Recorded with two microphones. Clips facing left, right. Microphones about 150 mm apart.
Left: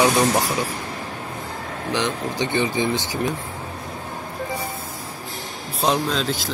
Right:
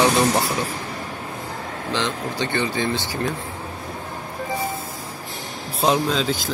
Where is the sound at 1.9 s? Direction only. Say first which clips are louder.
Left 1 dB; 20° left (ahead or behind).